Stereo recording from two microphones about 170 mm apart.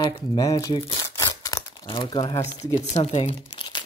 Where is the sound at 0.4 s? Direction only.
20° left (ahead or behind).